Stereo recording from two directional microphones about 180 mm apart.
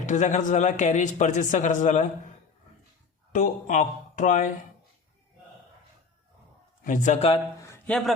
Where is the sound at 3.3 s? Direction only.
45° left (ahead or behind).